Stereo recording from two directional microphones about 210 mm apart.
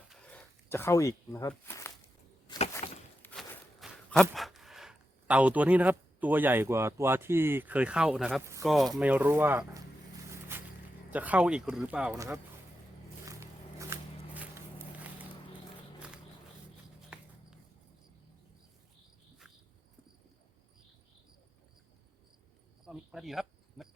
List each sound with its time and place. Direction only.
0.1 s a sound: 5° left (ahead or behind)
2.8 s a sound: 35° left (ahead or behind)
3.2 s speech: 5° left (ahead or behind)
8.4 s speech: 15° right (ahead or behind)
8.6 s speech: centre (ahead or behind)
11.1 s speech: 5° right (ahead or behind)
13.2 s walk: 15° right (ahead or behind)
16.0 s a sound: 5° right (ahead or behind)
22.9 s cricket: centre (ahead or behind)